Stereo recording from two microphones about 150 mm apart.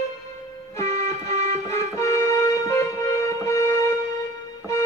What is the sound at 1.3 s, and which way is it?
Music, 45° right (ahead or behind).